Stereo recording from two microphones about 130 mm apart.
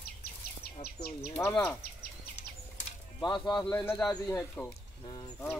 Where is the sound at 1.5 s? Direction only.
5° left (ahead or behind).